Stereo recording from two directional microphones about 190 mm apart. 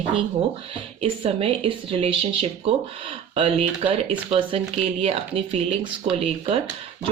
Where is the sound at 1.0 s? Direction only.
30° right (ahead or behind).